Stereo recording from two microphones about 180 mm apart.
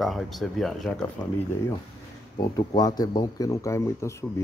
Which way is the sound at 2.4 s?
20° left (ahead or behind).